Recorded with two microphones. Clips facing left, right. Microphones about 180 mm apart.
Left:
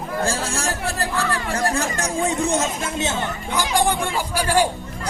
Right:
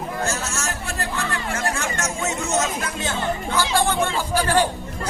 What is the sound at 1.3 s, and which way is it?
Speech, 35° left (ahead or behind).